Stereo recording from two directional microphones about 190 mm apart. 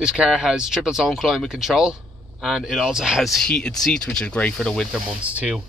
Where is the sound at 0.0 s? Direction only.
5° right (ahead or behind).